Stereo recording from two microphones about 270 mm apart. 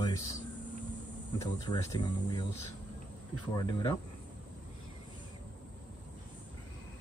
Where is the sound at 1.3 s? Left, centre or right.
Centre.